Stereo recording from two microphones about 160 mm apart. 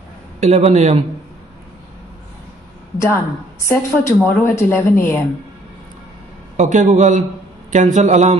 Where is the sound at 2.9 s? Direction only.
20° left (ahead or behind).